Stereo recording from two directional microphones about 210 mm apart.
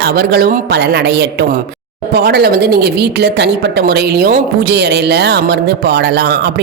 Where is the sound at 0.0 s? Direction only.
50° right (ahead or behind).